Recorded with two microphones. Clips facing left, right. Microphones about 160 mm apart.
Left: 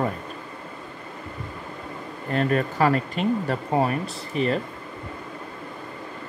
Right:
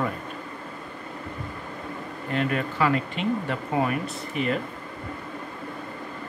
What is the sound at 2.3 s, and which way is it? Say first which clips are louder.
Speech: left 3 dB; 40° left (ahead or behind).